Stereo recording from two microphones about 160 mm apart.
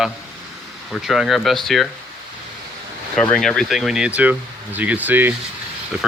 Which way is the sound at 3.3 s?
5° left (ahead or behind).